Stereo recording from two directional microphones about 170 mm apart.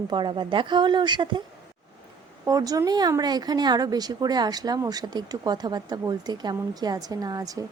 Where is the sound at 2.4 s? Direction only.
20° right (ahead or behind).